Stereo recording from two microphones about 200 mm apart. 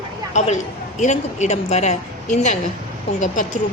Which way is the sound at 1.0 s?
35° left (ahead or behind).